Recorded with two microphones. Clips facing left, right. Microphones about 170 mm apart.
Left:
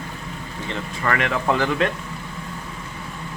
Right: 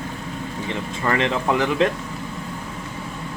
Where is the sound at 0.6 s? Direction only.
20° right (ahead or behind).